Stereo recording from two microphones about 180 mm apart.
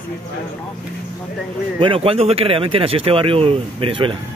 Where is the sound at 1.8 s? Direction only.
30° right (ahead or behind).